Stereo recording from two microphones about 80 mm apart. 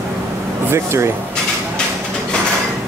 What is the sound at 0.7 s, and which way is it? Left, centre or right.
Speech, right.